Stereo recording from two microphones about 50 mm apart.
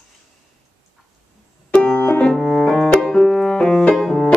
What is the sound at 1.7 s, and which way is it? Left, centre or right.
Music, left.